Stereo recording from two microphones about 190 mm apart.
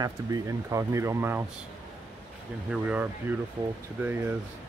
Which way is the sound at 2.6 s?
5° right (ahead or behind).